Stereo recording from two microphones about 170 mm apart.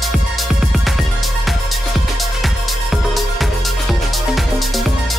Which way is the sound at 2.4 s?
Centre (ahead or behind).